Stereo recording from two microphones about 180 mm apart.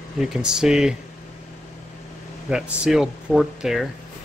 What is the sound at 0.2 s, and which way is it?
Speech, 5° right (ahead or behind).